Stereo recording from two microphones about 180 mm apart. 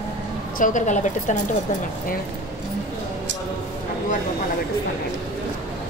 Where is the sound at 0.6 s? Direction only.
45° left (ahead or behind).